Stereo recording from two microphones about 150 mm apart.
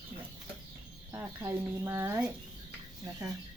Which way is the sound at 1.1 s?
20° right (ahead or behind).